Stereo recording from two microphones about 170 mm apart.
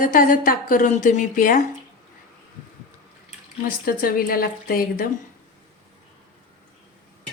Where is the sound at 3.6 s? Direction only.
60° left (ahead or behind).